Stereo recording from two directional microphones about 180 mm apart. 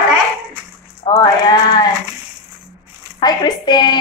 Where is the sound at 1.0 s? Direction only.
20° left (ahead or behind).